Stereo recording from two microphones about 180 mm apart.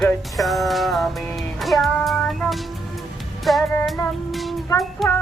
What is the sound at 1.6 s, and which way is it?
Music, centre (ahead or behind).